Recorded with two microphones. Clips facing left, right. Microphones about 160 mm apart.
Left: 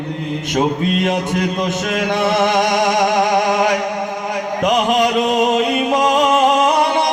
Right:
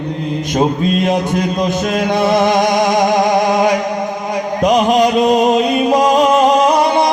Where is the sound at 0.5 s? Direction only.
35° right (ahead or behind).